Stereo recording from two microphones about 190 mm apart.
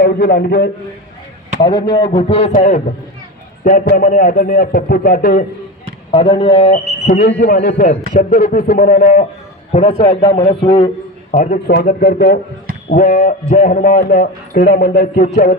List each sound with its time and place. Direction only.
0.0 s a man's voice: 55° left (ahead or behind)
1.6 s a man's voice: 25° left (ahead or behind); by 5.5 s 50° left (ahead or behind)
6.1 s speech: 30° left (ahead or behind)
7.0 s a man's voice: 50° left (ahead or behind)
9.7 s a man's voice: 30° left (ahead or behind)
11.3 s speech: 40° left (ahead or behind)
11.7 s a man's voice: 55° left (ahead or behind)
12.9 s a man's voice: 45° left (ahead or behind)